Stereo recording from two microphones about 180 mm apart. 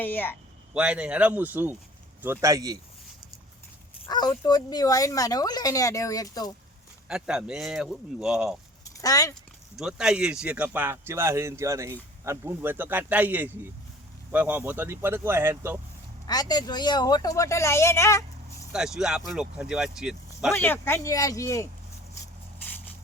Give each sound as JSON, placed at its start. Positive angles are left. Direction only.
{"t": 0.0, "sound": "speech", "side_deg": 10}
{"t": 0.7, "sound": "speech", "side_deg": -5}
{"t": 4.1, "sound": "speech", "side_deg": 20}
{"t": 7.1, "sound": "speech", "side_deg": -5}
{"t": 9.0, "sound": "speech", "side_deg": 20}
{"t": 9.7, "sound": "speech", "side_deg": -5}
{"t": 16.2, "sound": "speech", "side_deg": 20}
{"t": 18.7, "sound": "speech", "side_deg": -5}
{"t": 20.5, "sound": "speech", "side_deg": 10}